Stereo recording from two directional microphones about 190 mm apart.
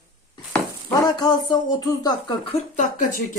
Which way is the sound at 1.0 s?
20° left (ahead or behind).